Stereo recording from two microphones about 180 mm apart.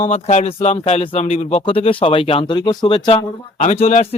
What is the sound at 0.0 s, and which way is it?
A man's voice, 35° left (ahead or behind).